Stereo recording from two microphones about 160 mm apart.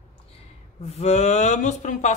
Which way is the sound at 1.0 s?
45° left (ahead or behind).